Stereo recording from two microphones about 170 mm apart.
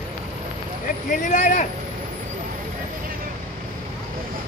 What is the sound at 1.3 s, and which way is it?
Speech, 50° left (ahead or behind).